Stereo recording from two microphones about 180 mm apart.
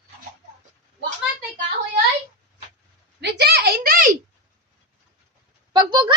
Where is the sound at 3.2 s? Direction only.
65° right (ahead or behind); by 4.1 s 50° right (ahead or behind).